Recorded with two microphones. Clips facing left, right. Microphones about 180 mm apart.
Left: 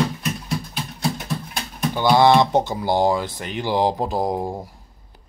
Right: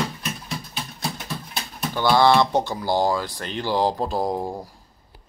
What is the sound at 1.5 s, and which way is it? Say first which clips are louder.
Speech: left 4 dB; 15° left (ahead or behind).